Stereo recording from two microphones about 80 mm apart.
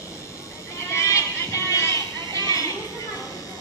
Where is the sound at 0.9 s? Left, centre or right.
Left.